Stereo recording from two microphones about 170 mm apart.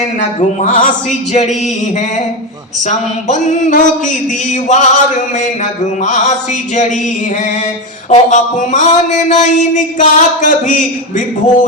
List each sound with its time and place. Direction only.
0.2 s a man's voice: 45° left (ahead or behind)
2.8 s a man's voice: 45° left (ahead or behind)
8.1 s a man's voice: 45° left (ahead or behind)